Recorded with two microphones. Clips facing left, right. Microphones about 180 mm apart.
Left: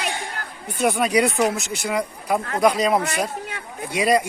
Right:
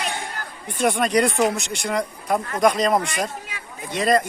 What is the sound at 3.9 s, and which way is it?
Speech, 10° left (ahead or behind).